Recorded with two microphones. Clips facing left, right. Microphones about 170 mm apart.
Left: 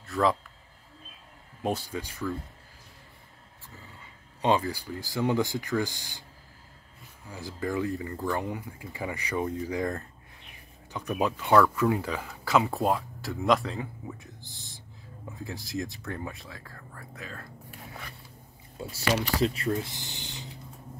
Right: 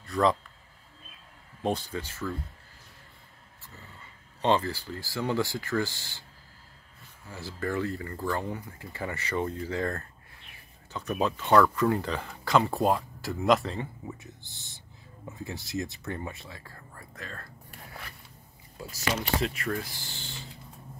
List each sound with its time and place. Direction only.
0.0 s speech: 5° left (ahead or behind)
1.6 s speech: 10° left (ahead or behind)
4.4 s speech: 10° left (ahead or behind)
7.2 s speech: 15° left (ahead or behind)
18.8 s speech: 30° left (ahead or behind)